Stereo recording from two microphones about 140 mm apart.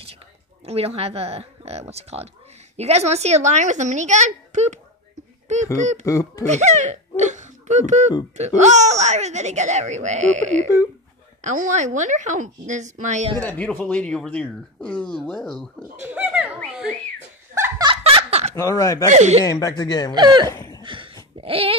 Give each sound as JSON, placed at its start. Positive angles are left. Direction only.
{"t": 0.7, "sound": "speech", "side_deg": -45}
{"t": 6.0, "sound": "speech", "side_deg": 25}
{"t": 6.4, "sound": "speech", "side_deg": -55}
{"t": 13.4, "sound": "speech", "side_deg": 10}
{"t": 16.0, "sound": "speech", "side_deg": -10}
{"t": 17.8, "sound": "laughter", "side_deg": -45}
{"t": 18.5, "sound": "speech", "side_deg": 20}
{"t": 19.0, "sound": "speech", "side_deg": -55}
{"t": 19.4, "sound": "speech", "side_deg": 25}
{"t": 20.2, "sound": "speech", "side_deg": -30}
{"t": 20.4, "sound": "laughter", "side_deg": 25}
{"t": 20.8, "sound": "a sound", "side_deg": -35}
{"t": 21.4, "sound": "speech", "side_deg": -45}